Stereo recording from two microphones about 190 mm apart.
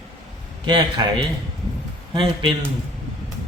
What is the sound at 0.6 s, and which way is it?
Speech, 25° right (ahead or behind).